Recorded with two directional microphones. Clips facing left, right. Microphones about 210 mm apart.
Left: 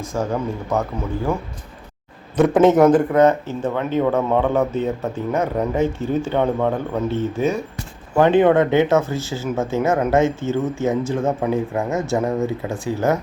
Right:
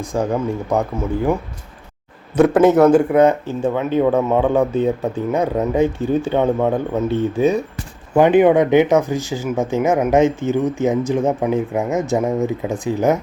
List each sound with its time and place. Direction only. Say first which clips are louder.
0.1 s speech: right 3 dB; 10° right (ahead or behind)
2.6 s speech: even; centre (ahead or behind); by 13.1 s 20° right (ahead or behind)